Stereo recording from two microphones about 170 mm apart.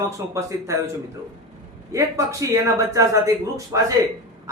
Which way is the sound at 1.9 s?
20° right (ahead or behind).